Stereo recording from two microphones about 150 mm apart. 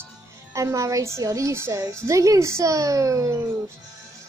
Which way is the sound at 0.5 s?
20° right (ahead or behind).